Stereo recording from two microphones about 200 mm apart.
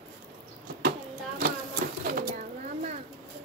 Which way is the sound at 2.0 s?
45° right (ahead or behind).